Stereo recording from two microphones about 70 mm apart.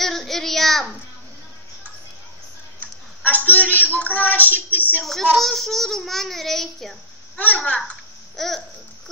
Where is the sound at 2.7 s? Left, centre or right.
Left.